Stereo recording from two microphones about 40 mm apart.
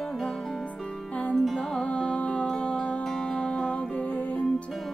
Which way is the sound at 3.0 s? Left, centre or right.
Centre.